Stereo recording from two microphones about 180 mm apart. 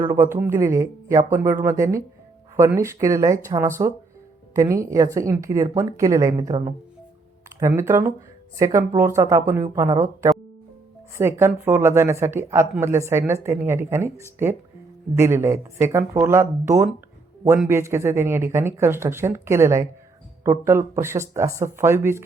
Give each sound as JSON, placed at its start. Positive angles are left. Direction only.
{"t": 0.0, "sound": "speech", "side_deg": -15}